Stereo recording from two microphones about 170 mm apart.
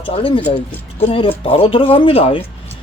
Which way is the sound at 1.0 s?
35° left (ahead or behind).